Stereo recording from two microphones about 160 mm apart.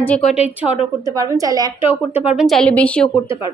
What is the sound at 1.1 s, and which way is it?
Speech, 20° right (ahead or behind).